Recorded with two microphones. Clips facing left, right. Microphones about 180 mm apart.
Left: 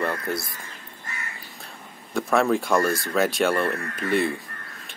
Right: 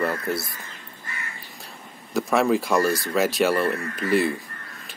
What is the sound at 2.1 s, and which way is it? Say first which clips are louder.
Speech: right 1 dB; centre (ahead or behind).